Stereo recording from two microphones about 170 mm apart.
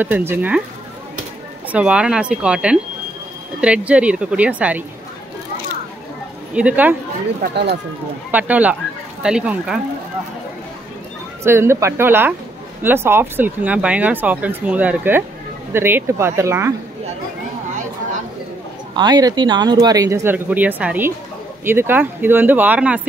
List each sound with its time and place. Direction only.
0.0 s speech: 10° right (ahead or behind)
1.7 s speech: 5° right (ahead or behind)
6.5 s speech: 10° right (ahead or behind)
7.4 s speech: 80° right
8.3 s speech: 10° right (ahead or behind)
11.4 s speech: 15° right (ahead or behind)
18.9 s speech: 25° right (ahead or behind); by 23.0 s 10° right (ahead or behind)